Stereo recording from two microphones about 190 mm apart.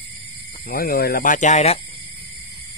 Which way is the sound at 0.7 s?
50° left (ahead or behind).